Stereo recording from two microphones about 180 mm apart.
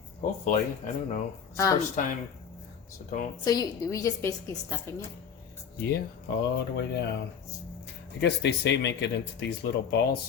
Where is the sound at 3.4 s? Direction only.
20° left (ahead or behind).